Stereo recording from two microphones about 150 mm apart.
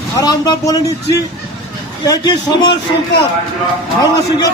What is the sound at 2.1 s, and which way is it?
Speech, 30° left (ahead or behind).